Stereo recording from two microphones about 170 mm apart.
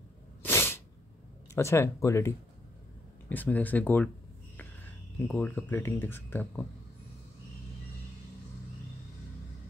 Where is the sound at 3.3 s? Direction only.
10° left (ahead or behind).